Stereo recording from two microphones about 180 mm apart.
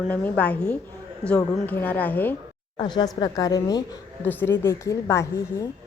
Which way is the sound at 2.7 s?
25° left (ahead or behind).